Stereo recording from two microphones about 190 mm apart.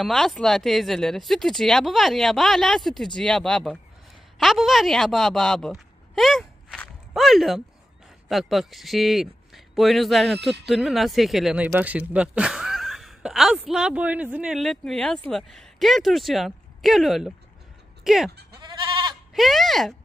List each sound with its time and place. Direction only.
0.0 s a man's voice: centre (ahead or behind)
18.6 s goat: 25° right (ahead or behind)
19.3 s speech: centre (ahead or behind)